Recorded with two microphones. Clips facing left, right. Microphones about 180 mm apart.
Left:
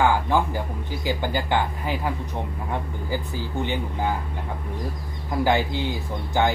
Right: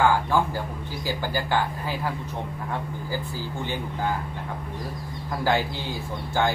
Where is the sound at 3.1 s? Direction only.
20° left (ahead or behind).